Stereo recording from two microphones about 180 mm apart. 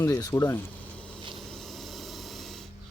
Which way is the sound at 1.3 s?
Centre (ahead or behind).